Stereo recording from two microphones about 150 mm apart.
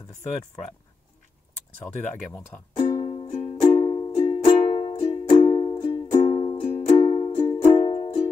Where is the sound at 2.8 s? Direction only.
45° left (ahead or behind).